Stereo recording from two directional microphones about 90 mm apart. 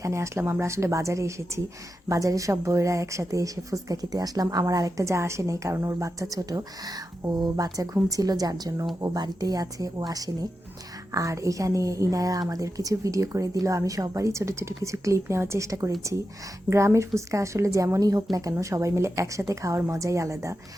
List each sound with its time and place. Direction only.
0.0 s a woman's voice: 35° right (ahead or behind)